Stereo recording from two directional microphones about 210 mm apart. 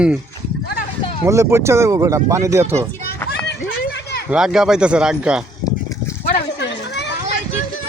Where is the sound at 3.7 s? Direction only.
50° left (ahead or behind).